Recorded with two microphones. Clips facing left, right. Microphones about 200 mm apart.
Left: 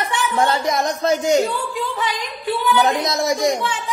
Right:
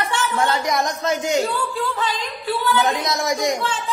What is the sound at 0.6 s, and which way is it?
Speech, 30° left (ahead or behind).